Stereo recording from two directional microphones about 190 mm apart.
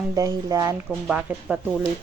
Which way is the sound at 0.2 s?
20° right (ahead or behind).